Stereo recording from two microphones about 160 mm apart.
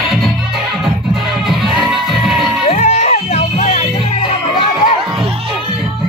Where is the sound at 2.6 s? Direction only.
40° left (ahead or behind).